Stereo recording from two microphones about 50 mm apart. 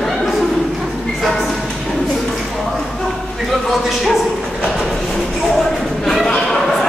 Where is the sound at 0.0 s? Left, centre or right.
Centre.